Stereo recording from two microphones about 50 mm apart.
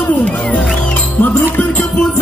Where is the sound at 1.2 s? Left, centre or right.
Left.